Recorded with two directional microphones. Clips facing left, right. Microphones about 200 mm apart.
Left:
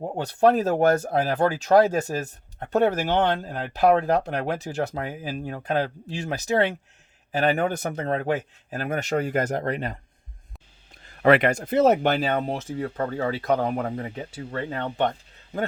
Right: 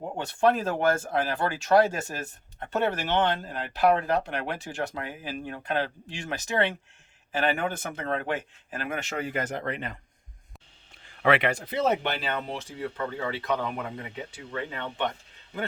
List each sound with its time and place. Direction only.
0.2 s speech: 35° left (ahead or behind)
11.0 s speech: 40° left (ahead or behind)